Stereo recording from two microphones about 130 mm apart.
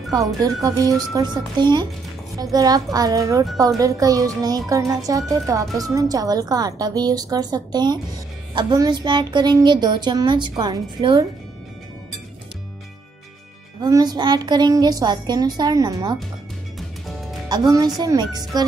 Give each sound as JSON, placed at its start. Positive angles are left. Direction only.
{"t": 0.1, "sound": "a child's voice", "side_deg": -25}
{"t": 13.8, "sound": "a woman's voice", "side_deg": -30}
{"t": 17.5, "sound": "a woman's voice", "side_deg": -30}